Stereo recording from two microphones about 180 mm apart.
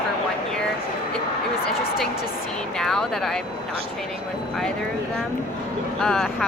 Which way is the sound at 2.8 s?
Centre (ahead or behind).